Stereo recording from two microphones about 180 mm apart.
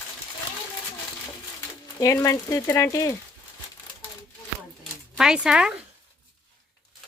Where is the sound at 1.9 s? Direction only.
15° left (ahead or behind).